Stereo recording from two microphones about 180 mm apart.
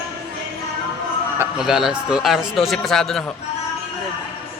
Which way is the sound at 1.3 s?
10° right (ahead or behind).